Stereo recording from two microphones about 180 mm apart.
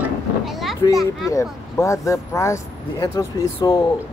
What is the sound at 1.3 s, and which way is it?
Speech, 15° left (ahead or behind).